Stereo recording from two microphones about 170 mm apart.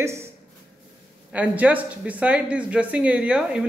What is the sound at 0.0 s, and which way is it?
Speech, 15° right (ahead or behind).